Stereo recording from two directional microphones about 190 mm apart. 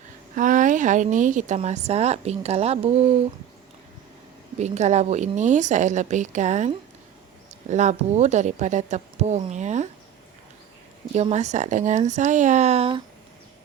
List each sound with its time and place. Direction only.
0.3 s a woman's voice: 40° right (ahead or behind)
4.5 s a woman's voice: 35° right (ahead or behind)
11.1 s a woman's voice: 35° right (ahead or behind)